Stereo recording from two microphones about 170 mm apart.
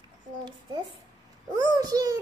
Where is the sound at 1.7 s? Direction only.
20° right (ahead or behind).